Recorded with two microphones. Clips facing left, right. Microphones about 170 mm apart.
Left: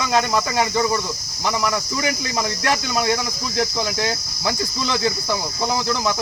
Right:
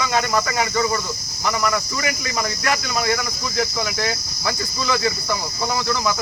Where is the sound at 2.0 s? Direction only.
30° left (ahead or behind).